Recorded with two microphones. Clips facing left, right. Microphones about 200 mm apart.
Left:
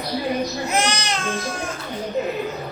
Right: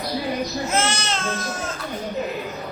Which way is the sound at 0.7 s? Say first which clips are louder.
Left 1 dB; 15° left (ahead or behind).